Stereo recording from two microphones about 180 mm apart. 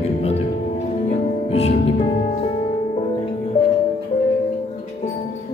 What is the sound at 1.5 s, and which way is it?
Music, 35° left (ahead or behind).